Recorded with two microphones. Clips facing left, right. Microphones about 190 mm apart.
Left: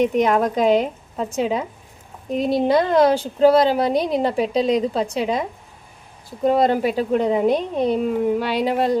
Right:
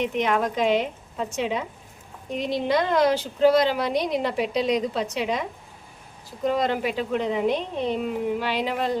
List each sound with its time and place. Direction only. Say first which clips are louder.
0.0 s a woman's voice: left 6 dB; 40° left (ahead or behind)